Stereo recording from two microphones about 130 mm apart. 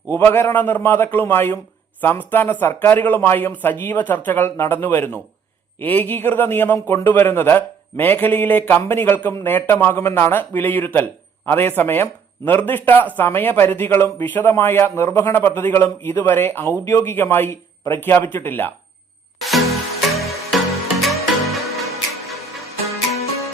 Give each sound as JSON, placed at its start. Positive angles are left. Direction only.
{"t": 0.1, "sound": "a man's voice", "side_deg": 15}
{"t": 19.4, "sound": "music", "side_deg": 0}